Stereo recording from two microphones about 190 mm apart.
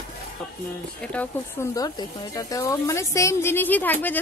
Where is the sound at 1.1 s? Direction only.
15° left (ahead or behind).